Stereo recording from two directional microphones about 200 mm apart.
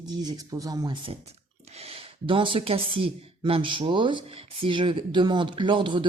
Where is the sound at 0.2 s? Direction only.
20° right (ahead or behind).